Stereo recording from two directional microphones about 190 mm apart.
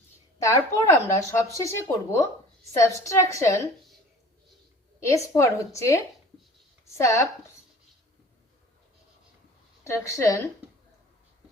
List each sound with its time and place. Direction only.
0.4 s speech: 15° left (ahead or behind)
4.9 s speech: 15° left (ahead or behind)
9.8 s speech: 15° left (ahead or behind)